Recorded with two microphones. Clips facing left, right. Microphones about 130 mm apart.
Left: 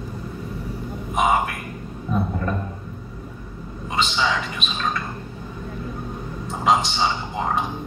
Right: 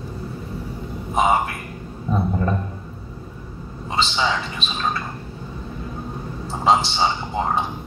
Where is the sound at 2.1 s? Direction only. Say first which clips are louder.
Even; 30° right (ahead or behind).